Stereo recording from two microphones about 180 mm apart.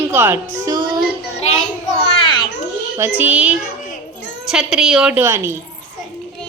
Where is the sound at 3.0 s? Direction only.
10° right (ahead or behind).